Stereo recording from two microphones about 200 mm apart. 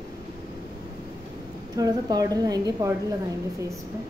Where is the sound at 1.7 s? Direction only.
15° right (ahead or behind).